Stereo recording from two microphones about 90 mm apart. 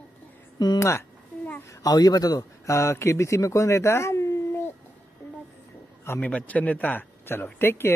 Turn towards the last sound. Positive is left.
turn(degrees=25)  # may be behind; listen again after turning